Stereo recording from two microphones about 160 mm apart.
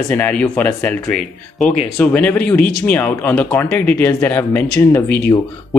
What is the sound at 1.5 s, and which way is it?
Speech, 50° left (ahead or behind).